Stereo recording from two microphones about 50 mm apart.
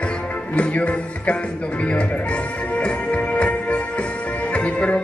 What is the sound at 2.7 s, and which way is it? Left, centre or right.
Music, left.